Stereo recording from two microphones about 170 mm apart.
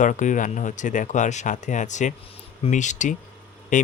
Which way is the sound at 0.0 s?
45° left (ahead or behind).